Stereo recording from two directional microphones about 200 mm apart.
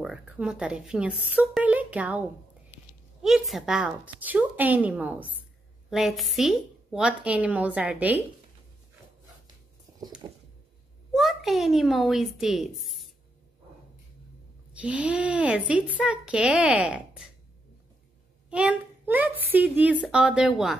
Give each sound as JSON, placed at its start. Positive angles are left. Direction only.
{"t": 0.0, "sound": "a woman's voice", "side_deg": -5}
{"t": 10.2, "sound": "a sound", "side_deg": -25}
{"t": 11.1, "sound": "speech", "side_deg": 0}
{"t": 14.7, "sound": "a woman's voice", "side_deg": -5}
{"t": 18.5, "sound": "a woman's voice", "side_deg": -5}